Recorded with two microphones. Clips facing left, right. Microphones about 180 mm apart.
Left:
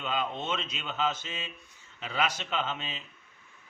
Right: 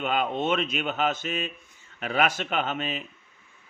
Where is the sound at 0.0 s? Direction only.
55° right (ahead or behind).